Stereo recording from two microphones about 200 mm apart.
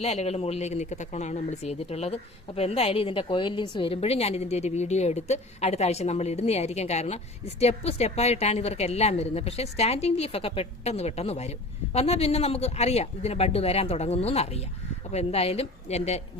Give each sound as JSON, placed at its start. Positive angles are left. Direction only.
{"t": 0.0, "sound": "a woman's voice", "side_deg": 30}